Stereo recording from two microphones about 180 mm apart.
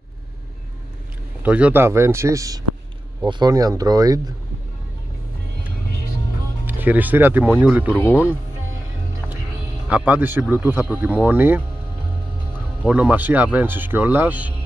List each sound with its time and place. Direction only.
1.4 s speech: 5° right (ahead or behind)
6.6 s speech: 10° right (ahead or behind)
7.9 s speech: 10° left (ahead or behind)
9.8 s speech: 10° right (ahead or behind)
12.8 s speech: 10° right (ahead or behind)